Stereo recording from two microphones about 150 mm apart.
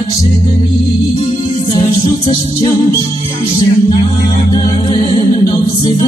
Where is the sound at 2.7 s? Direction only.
20° left (ahead or behind).